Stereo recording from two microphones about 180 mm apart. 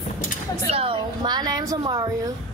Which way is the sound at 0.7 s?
30° right (ahead or behind).